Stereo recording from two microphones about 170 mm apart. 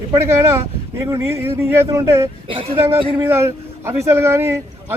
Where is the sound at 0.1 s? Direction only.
15° right (ahead or behind).